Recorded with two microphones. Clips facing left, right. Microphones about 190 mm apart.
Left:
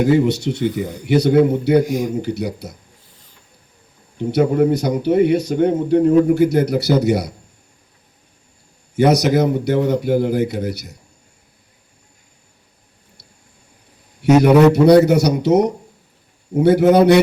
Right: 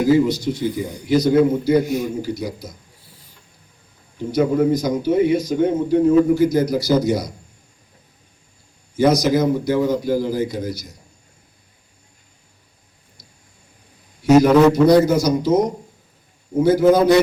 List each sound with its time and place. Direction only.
0.0 s speech: 65° left (ahead or behind)
1.8 s a man's voice: 15° left (ahead or behind)
2.2 s speech: 65° left (ahead or behind)
4.3 s a man's voice: 70° left (ahead or behind)
9.0 s speech: 65° left (ahead or behind)
14.7 s speech: 65° left (ahead or behind)